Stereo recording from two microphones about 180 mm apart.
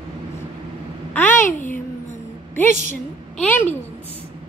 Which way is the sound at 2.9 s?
10° left (ahead or behind).